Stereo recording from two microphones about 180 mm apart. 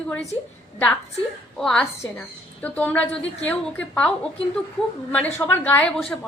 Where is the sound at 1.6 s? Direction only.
Centre (ahead or behind).